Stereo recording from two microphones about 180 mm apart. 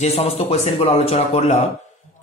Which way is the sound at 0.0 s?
35° left (ahead or behind).